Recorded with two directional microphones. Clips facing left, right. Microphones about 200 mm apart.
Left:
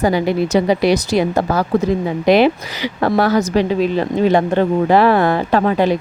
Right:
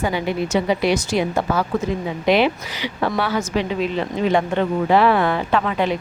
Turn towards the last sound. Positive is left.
turn(degrees=40)  # may be behind; listen again after turning